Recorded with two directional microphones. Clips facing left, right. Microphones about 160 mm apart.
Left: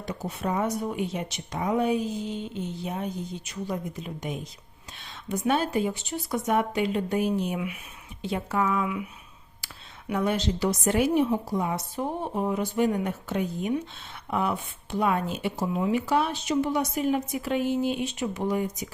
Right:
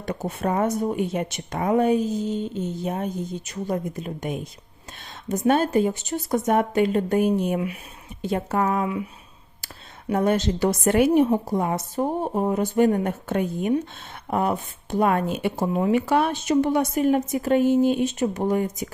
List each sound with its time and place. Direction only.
0.0 s speech: 55° right (ahead or behind); by 9.0 s 35° right (ahead or behind)
10.1 s speech: 45° right (ahead or behind)
14.3 s speech: 45° right (ahead or behind)